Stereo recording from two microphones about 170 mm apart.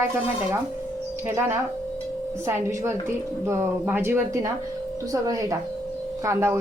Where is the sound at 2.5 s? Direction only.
15° right (ahead or behind).